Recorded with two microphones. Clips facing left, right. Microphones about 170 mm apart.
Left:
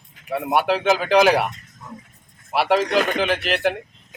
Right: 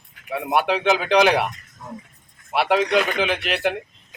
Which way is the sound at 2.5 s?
Centre (ahead or behind).